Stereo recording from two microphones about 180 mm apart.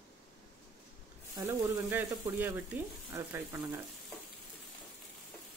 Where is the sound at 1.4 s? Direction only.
15° right (ahead or behind).